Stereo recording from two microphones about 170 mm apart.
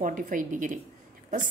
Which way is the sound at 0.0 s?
50° right (ahead or behind).